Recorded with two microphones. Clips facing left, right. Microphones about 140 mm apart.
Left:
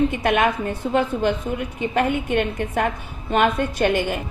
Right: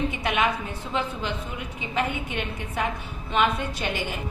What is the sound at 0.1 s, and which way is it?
A woman's voice, 50° left (ahead or behind).